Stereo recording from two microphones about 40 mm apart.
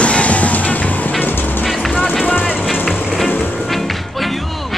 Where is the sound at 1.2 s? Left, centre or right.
Left.